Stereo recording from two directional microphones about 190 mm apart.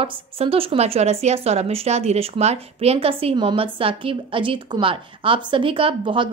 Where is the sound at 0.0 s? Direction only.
30° right (ahead or behind).